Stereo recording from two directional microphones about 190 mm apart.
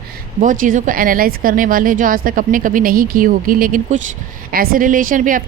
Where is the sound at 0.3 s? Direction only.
45° right (ahead or behind).